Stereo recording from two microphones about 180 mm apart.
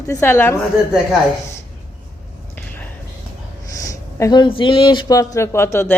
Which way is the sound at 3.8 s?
20° left (ahead or behind).